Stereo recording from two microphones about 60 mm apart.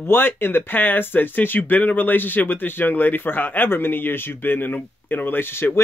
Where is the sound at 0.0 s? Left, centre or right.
Left.